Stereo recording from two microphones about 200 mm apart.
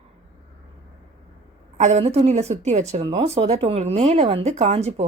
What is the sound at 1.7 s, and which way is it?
Speech, 35° right (ahead or behind).